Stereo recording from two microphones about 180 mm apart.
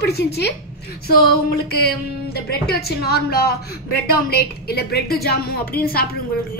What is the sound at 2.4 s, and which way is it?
A woman's voice, 60° left (ahead or behind).